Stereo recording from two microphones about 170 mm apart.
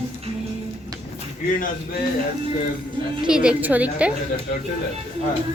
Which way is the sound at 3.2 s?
5° right (ahead or behind).